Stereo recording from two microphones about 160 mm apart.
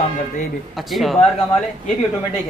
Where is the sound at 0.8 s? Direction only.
Centre (ahead or behind).